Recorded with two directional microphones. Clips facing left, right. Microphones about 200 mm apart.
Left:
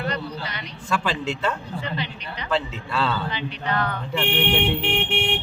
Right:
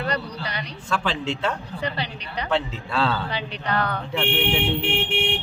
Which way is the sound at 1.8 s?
35° right (ahead or behind).